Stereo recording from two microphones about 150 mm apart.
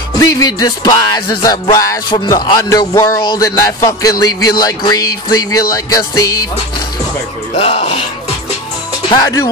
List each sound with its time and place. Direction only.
0.2 s music: 25° left (ahead or behind)
7.5 s speech: 45° left (ahead or behind)
9.1 s music: 25° left (ahead or behind)